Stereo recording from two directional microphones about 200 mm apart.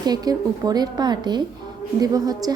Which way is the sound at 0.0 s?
20° right (ahead or behind).